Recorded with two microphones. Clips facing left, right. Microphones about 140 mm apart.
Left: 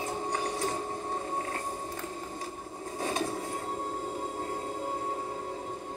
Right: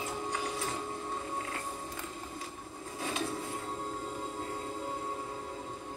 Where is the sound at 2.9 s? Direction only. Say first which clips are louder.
Left 4 dB; 40° left (ahead or behind).